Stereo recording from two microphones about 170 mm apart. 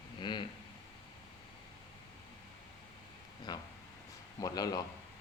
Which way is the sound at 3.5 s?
25° left (ahead or behind).